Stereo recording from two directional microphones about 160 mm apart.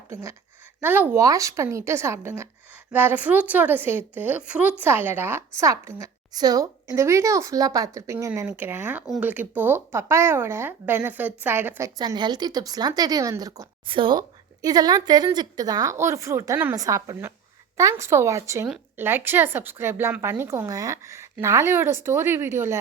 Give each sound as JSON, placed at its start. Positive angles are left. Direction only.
{"t": 0.1, "sound": "speech", "side_deg": -15}
{"t": 9.0, "sound": "speech", "side_deg": 0}
{"t": 9.3, "sound": "speech", "side_deg": -10}
{"t": 11.9, "sound": "speech", "side_deg": -25}